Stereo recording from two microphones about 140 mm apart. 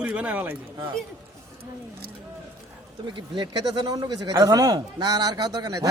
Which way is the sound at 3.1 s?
35° right (ahead or behind).